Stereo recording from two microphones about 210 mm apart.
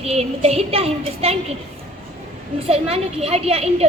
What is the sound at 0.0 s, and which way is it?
A woman's voice, 30° right (ahead or behind).